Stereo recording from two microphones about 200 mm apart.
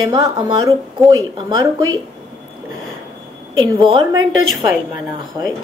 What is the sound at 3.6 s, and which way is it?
Speech, 25° right (ahead or behind).